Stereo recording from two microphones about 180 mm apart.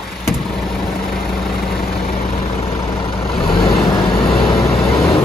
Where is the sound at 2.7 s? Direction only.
30° left (ahead or behind).